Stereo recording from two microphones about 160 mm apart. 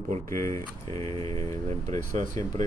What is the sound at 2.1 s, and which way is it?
Speech, 50° right (ahead or behind).